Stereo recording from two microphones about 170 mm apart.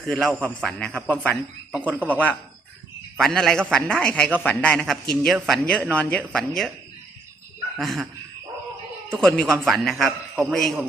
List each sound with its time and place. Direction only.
0.1 s a man's voice: 5° left (ahead or behind)
1.7 s a man's voice: 10° right (ahead or behind)
2.0 s a man's voice: 10° left (ahead or behind)
7.8 s a man's voice: centre (ahead or behind)
9.1 s a man's voice: 5° left (ahead or behind)